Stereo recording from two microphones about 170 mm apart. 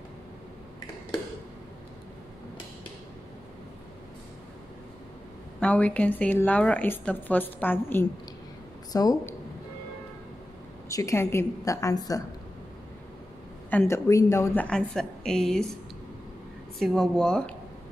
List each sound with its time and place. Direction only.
5.6 s speech: 5° left (ahead or behind)
8.9 s a woman's voice: 20° left (ahead or behind)
10.9 s a woman's voice: 20° left (ahead or behind)
13.7 s speech: 15° left (ahead or behind)
16.7 s speech: centre (ahead or behind)